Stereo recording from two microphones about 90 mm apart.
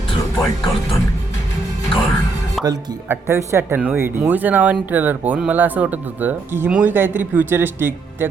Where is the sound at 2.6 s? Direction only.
Centre (ahead or behind).